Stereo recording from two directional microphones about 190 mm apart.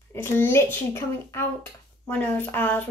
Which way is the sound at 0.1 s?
10° left (ahead or behind).